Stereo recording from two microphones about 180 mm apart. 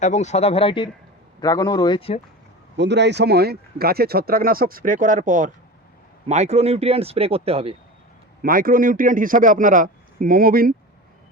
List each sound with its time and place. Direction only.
0.0 s speech: 40° left (ahead or behind)
2.7 s speech: 75° right (ahead or behind); by 7.8 s 30° right (ahead or behind)
8.4 s a man's voice: 50° right (ahead or behind)